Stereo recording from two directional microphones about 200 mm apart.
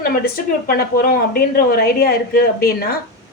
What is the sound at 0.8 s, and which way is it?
A woman's voice, 45° left (ahead or behind).